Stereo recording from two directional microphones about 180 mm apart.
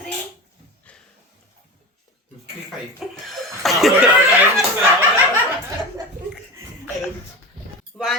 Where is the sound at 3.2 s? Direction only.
Centre (ahead or behind).